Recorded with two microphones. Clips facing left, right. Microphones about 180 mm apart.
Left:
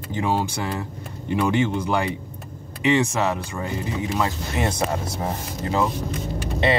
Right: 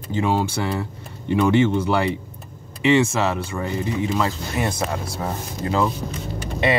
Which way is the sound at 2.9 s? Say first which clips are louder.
Right 2 dB; 15° left (ahead or behind).